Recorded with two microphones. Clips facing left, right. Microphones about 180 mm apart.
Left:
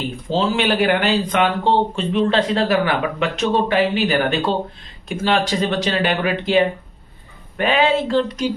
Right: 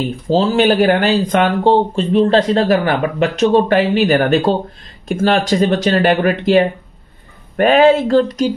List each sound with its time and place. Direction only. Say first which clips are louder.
0.3 s speech: right 6 dB; 40° right (ahead or behind)